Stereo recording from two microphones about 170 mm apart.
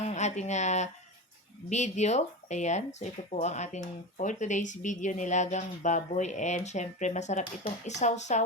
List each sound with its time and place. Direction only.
0.0 s speech: 40° left (ahead or behind)